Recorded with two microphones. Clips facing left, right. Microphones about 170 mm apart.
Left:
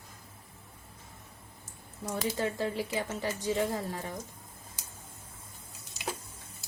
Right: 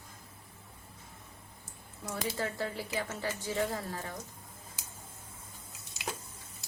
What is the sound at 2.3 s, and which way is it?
A woman's voice, 20° left (ahead or behind).